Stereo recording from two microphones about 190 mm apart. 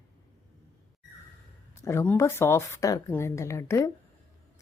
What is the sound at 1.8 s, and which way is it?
Speech, 15° left (ahead or behind).